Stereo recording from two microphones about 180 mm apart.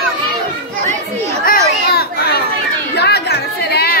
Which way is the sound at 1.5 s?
55° left (ahead or behind).